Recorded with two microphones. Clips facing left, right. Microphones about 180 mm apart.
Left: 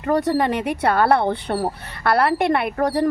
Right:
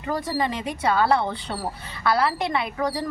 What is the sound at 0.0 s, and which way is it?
A woman's voice, 60° left (ahead or behind).